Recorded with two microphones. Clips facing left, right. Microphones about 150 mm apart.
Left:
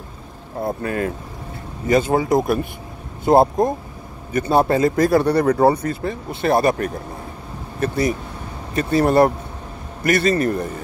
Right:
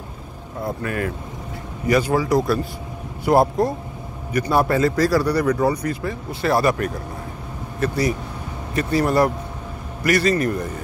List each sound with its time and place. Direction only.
0.6 s a man's voice: 25° left (ahead or behind)
7.8 s a man's voice: 25° left (ahead or behind)